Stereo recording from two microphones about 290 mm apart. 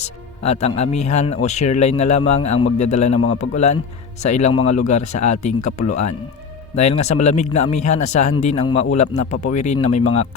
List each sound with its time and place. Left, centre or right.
0.0 s speech: left